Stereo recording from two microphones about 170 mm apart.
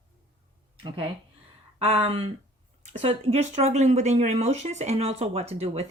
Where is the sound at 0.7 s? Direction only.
30° right (ahead or behind).